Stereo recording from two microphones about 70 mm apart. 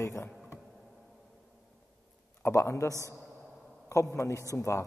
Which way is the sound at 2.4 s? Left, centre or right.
Left.